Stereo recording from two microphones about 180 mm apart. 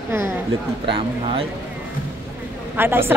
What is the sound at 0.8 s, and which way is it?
Speech, 30° right (ahead or behind).